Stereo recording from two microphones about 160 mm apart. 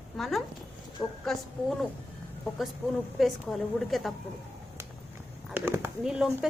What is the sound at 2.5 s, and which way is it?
A woman's voice, centre (ahead or behind).